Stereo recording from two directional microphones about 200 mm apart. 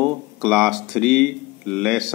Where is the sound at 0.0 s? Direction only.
Centre (ahead or behind).